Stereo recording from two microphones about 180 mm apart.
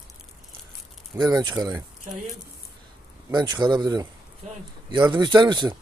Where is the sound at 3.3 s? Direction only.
25° right (ahead or behind).